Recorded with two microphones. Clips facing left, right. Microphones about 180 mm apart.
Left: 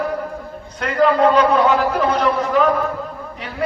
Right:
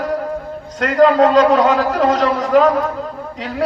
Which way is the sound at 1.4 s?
90° right.